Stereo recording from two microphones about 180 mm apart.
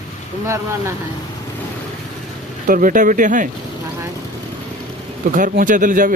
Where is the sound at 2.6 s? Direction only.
50° right (ahead or behind).